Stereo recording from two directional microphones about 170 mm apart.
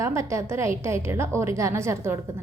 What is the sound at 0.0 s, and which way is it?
A woman's voice, 15° right (ahead or behind).